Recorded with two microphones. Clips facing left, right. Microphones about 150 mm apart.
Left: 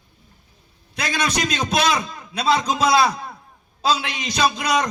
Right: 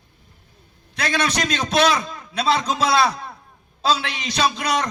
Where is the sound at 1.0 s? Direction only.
10° left (ahead or behind).